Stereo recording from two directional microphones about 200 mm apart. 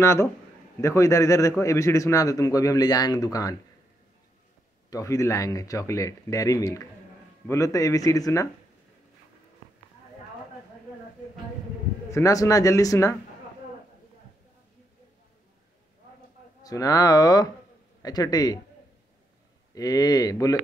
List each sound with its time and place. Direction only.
0.0 s speech: 15° left (ahead or behind)
4.8 s speech: 15° left (ahead or behind)
12.1 s speech: 15° left (ahead or behind)
16.6 s speech: 15° left (ahead or behind)
19.7 s speech: 20° left (ahead or behind)